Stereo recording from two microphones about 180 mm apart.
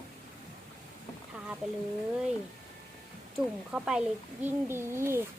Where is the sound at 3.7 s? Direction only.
5° right (ahead or behind).